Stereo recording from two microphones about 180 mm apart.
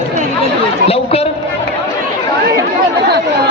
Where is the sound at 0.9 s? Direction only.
35° left (ahead or behind).